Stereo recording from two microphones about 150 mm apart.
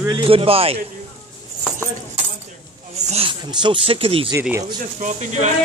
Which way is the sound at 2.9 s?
45° right (ahead or behind).